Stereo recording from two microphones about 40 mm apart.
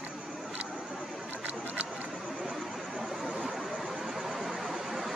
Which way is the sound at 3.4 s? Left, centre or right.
Centre.